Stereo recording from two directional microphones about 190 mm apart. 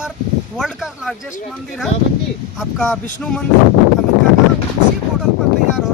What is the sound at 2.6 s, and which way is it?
Speech, centre (ahead or behind).